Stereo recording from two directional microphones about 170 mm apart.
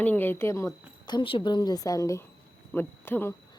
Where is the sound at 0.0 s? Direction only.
10° left (ahead or behind).